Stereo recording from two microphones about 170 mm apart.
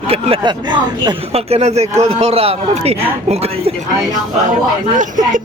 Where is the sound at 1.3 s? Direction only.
40° right (ahead or behind).